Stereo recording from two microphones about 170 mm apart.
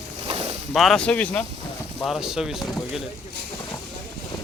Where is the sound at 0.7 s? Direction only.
Centre (ahead or behind).